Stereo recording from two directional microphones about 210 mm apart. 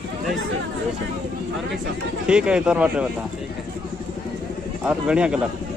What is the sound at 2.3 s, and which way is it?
Speech, 5° right (ahead or behind).